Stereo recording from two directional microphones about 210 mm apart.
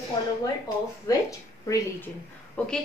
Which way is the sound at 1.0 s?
15° left (ahead or behind).